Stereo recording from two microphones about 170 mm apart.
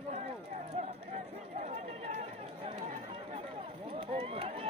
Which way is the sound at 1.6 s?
45° right (ahead or behind).